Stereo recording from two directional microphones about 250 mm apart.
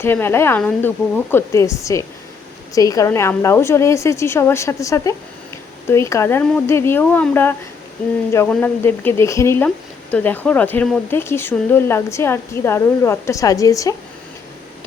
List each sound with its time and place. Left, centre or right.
0.0 s speech: centre